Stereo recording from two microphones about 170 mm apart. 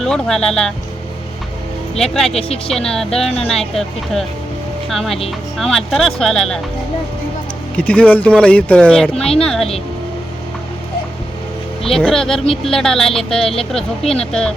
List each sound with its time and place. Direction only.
0.0 s speech: 5° left (ahead or behind)
2.6 s speech: 5° left (ahead or behind)
7.8 s speech: 5° left (ahead or behind)
11.8 s speech: centre (ahead or behind)